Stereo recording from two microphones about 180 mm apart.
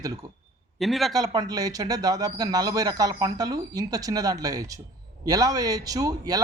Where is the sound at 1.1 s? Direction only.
20° right (ahead or behind).